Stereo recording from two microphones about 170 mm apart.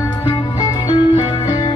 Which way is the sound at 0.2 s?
25° left (ahead or behind).